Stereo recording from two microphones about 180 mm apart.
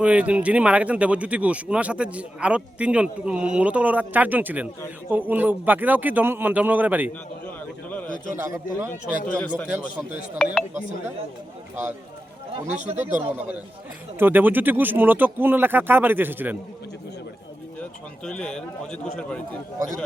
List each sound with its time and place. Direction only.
0.0 s speech: 5° right (ahead or behind)
7.4 s a sound: 10° left (ahead or behind)
8.4 s speech: 15° right (ahead or behind)
8.9 s a man's voice: 10° left (ahead or behind)
12.8 s speech: 40° right (ahead or behind)
14.2 s speech: 10° right (ahead or behind)
18.3 s a man's voice: 5° left (ahead or behind)